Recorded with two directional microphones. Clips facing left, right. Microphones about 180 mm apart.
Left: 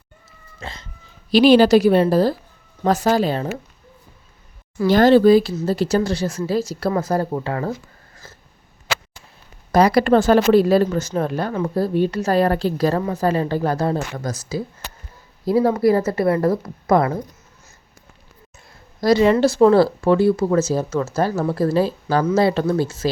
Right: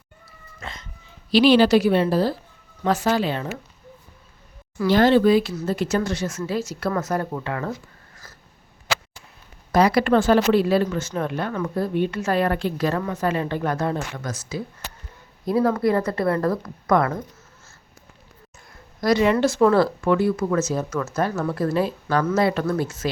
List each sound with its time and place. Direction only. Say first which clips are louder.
0.6 s cat: left 2 dB; 30° left (ahead or behind)
1.3 s a woman's voice: left 3 dB; 45° left (ahead or behind)
4.9 s speech: left 4 dB; 40° left (ahead or behind)
8.2 s cough: left 5 dB; 25° left (ahead or behind)
9.7 s speech: left 3 dB; 40° left (ahead or behind)
18.9 s speech: left 4 dB; 30° left (ahead or behind)